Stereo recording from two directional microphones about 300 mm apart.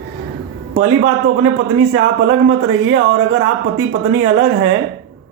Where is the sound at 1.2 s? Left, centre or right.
Right.